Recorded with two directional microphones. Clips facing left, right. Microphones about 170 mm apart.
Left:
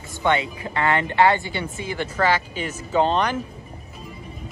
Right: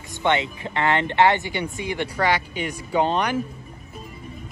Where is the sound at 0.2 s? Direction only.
20° right (ahead or behind).